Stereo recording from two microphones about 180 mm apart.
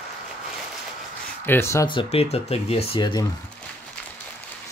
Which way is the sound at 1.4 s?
15° left (ahead or behind).